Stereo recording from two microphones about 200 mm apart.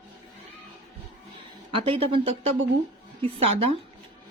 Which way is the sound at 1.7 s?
25° right (ahead or behind).